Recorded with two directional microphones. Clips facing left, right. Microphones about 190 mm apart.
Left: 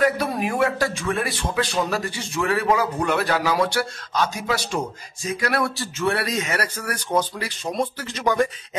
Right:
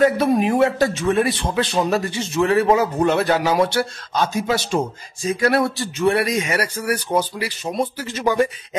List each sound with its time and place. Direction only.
0.0 s a man's voice: 25° right (ahead or behind); by 8.5 s 5° right (ahead or behind)